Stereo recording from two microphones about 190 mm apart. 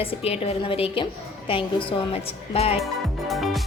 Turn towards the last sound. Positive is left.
turn(degrees=0)  # may be behind; listen again after turning